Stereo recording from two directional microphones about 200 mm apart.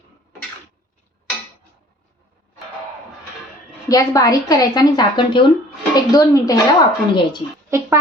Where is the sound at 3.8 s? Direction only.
15° left (ahead or behind).